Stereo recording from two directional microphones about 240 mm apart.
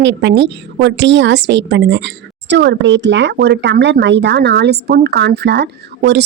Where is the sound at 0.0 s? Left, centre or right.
Right.